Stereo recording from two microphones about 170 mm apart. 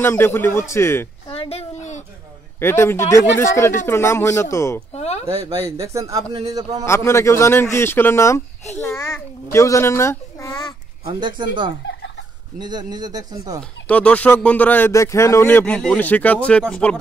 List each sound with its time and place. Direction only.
0.0 s a man's voice: 15° left (ahead or behind)
1.3 s a sound: 35° left (ahead or behind)
2.6 s a man's voice: 15° left (ahead or behind)
4.9 s a sound: 40° left (ahead or behind)
5.4 s speech: 20° right (ahead or behind)
6.9 s a man's voice: 15° left (ahead or behind)
11.1 s speech: 25° right (ahead or behind)
11.8 s fowl: 90° left
12.5 s speech: 25° right (ahead or behind)
13.6 s a man's voice: 5° left (ahead or behind)